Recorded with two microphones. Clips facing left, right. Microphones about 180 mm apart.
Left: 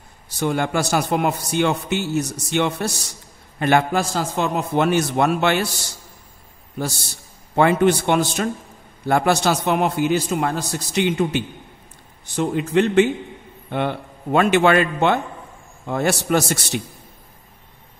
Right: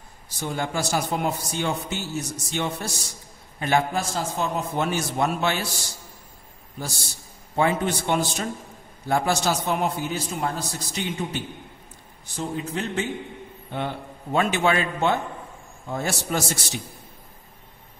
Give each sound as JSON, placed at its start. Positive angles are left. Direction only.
{"t": 0.4, "sound": "a man's voice", "side_deg": 70}
{"t": 7.5, "sound": "a man's voice", "side_deg": 70}
{"t": 13.7, "sound": "a man's voice", "side_deg": 70}